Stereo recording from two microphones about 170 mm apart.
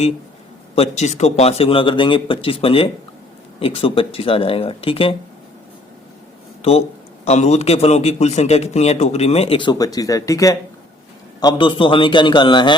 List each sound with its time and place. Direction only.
0.8 s a man's voice: 40° left (ahead or behind)
6.6 s a man's voice: 35° left (ahead or behind)